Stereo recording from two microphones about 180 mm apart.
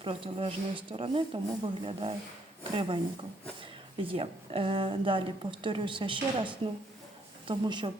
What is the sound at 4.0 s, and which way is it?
A woman's voice, 30° right (ahead or behind).